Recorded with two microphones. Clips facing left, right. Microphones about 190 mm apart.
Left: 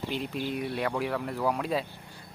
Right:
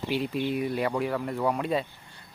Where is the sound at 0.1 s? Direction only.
Centre (ahead or behind).